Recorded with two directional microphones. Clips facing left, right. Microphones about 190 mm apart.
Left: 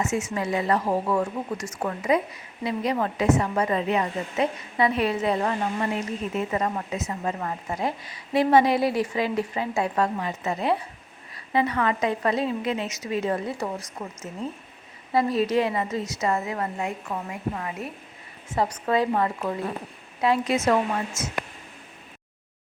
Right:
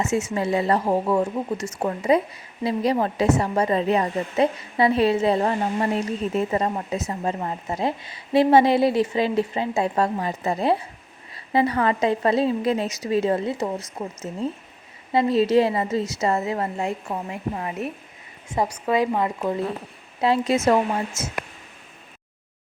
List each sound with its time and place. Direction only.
0.3 s a woman's voice: 30° right (ahead or behind)
18.5 s speech: 15° right (ahead or behind)
20.2 s a woman's voice: 30° right (ahead or behind)